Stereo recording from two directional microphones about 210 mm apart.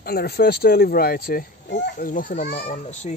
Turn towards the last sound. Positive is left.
turn(degrees=35)  # may be behind; listen again after turning